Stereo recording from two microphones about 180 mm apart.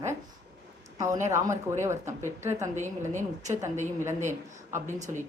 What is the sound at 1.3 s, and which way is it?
A woman's voice, 15° right (ahead or behind).